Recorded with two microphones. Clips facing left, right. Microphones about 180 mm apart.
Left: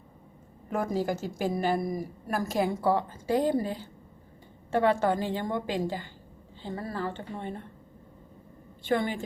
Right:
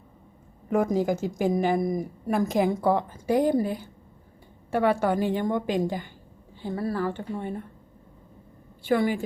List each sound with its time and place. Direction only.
0.7 s a woman's voice: 15° right (ahead or behind)
8.8 s a woman's voice: 10° right (ahead or behind)